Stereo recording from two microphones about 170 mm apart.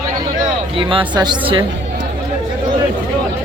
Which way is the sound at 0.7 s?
30° right (ahead or behind).